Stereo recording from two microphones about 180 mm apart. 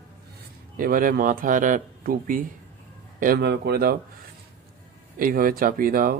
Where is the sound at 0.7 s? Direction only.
50° right (ahead or behind).